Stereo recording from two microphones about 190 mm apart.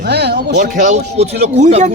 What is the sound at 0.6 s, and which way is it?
Speech, 40° right (ahead or behind).